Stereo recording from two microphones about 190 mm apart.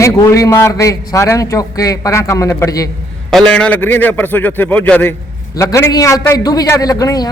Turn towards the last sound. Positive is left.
turn(degrees=20)  # may be behind; listen again after turning